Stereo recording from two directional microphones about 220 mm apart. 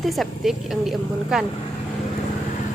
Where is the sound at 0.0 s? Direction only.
Centre (ahead or behind).